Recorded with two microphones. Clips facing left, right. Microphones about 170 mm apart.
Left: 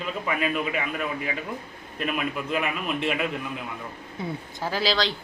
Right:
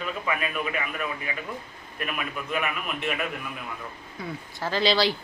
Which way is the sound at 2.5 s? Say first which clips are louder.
Even; 30° left (ahead or behind).